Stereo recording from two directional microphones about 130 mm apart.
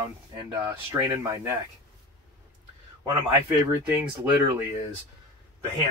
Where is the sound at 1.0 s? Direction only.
25° right (ahead or behind).